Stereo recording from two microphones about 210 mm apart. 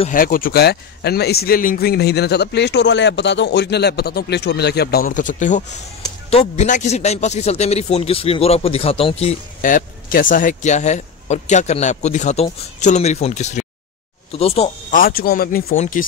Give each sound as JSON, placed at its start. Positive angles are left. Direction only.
{"t": 0.0, "sound": "a man's voice", "side_deg": 40}
{"t": 15.0, "sound": "a man's voice", "side_deg": 45}